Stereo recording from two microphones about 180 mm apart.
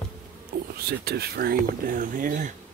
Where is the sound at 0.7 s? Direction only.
65° right (ahead or behind); by 2.5 s 45° right (ahead or behind).